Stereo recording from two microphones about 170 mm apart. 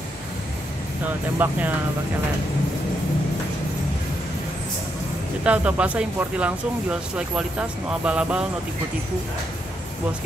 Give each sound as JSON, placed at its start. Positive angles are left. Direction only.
{"t": 1.4, "sound": "speech", "side_deg": -10}
{"t": 5.4, "sound": "speech", "side_deg": -5}